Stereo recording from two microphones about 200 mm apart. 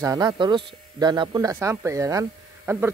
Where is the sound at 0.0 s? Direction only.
20° right (ahead or behind).